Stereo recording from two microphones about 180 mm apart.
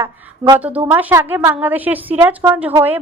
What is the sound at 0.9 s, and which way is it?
A woman's voice, 10° right (ahead or behind).